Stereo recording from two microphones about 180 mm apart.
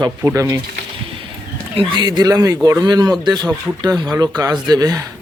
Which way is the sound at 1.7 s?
30° right (ahead or behind).